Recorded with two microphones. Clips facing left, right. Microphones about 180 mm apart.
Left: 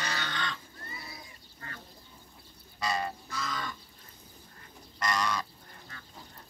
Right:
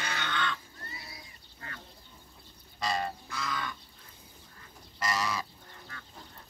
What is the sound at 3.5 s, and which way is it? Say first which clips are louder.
Livestock: right 2 dB; 45° left (ahead or behind).